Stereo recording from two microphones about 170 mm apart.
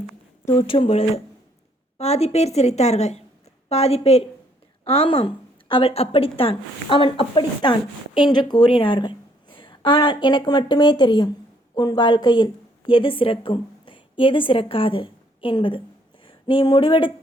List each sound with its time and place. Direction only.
0.5 s a woman's voice: 30° left (ahead or behind)